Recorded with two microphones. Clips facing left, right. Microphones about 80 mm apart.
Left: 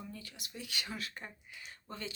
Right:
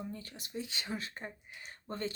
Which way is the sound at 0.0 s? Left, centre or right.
Right.